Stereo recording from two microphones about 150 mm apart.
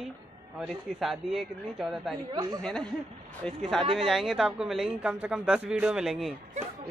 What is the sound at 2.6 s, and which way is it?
Speech, 5° left (ahead or behind).